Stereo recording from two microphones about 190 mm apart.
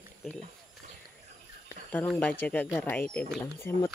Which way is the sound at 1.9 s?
10° left (ahead or behind).